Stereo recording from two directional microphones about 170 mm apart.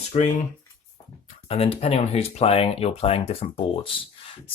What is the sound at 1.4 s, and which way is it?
Speech, 35° left (ahead or behind).